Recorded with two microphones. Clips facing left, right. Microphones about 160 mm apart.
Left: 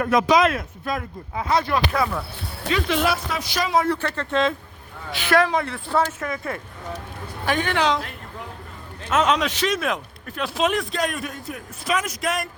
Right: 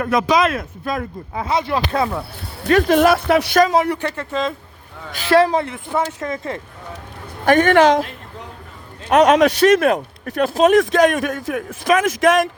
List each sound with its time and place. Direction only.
0.0 s speech: 75° right (ahead or behind)
0.9 s speech: 35° right (ahead or behind)
1.5 s speech: 25° right (ahead or behind)
2.6 s speech: 50° right (ahead or behind)
3.8 s speech: 15° right (ahead or behind)
5.1 s speech: 30° right (ahead or behind)
5.6 s speech: 20° right (ahead or behind)
7.4 s speech: 50° right (ahead or behind)
9.0 s a man's voice: 60° right (ahead or behind)
10.4 s speech: 45° right (ahead or behind)
10.9 s a man's voice: 90° right